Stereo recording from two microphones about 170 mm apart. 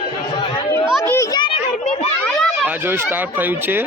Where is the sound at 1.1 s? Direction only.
15° left (ahead or behind).